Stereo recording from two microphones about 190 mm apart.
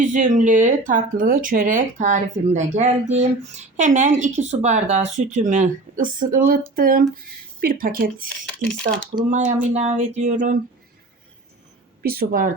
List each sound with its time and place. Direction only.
0.0 s speech: 40° right (ahead or behind)
9.3 s speech: 35° right (ahead or behind)
12.0 s speech: 50° right (ahead or behind)